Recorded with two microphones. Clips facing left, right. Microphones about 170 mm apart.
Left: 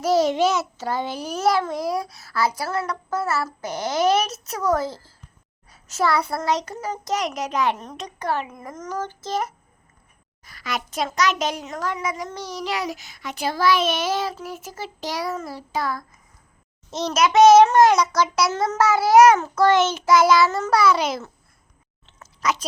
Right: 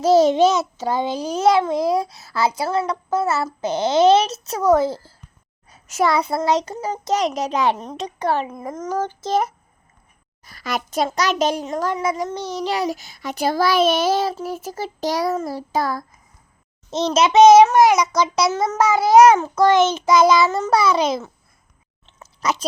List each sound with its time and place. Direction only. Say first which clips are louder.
0.0 s a child's voice: right 5 dB; 25° right (ahead or behind)
10.4 s a child's voice: right 4 dB; 35° right (ahead or behind)
16.9 s a child's voice: right 3 dB; 25° right (ahead or behind)
22.2 s a sound: right 1 dB; 30° right (ahead or behind)